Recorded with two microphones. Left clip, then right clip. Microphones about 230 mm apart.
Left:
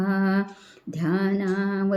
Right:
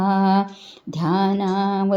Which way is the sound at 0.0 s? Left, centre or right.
Centre.